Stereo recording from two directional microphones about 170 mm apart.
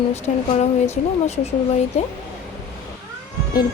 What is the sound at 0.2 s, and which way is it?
Speech, 40° left (ahead or behind).